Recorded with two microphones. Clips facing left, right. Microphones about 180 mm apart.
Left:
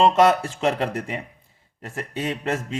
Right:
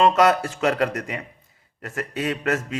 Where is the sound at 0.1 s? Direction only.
30° left (ahead or behind).